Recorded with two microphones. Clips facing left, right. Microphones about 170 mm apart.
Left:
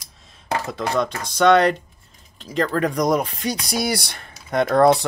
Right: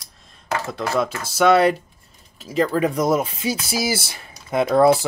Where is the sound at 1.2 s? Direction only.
5° right (ahead or behind).